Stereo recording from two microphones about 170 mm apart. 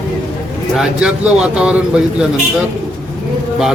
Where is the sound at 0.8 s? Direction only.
5° right (ahead or behind).